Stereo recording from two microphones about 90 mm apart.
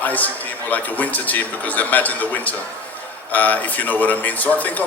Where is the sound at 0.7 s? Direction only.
15° left (ahead or behind).